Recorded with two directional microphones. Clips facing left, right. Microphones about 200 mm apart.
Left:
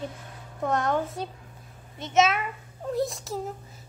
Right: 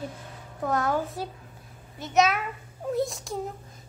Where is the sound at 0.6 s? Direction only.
Centre (ahead or behind).